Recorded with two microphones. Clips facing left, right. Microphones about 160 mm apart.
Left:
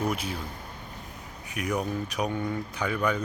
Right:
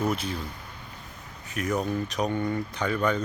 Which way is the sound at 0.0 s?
10° left (ahead or behind).